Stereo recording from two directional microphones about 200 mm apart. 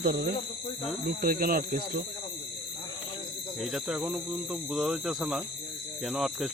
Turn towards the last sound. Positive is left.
turn(degrees=0)  # may be behind; listen again after turning